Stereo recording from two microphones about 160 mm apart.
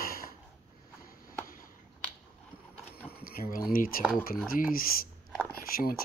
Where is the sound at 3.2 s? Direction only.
65° left (ahead or behind).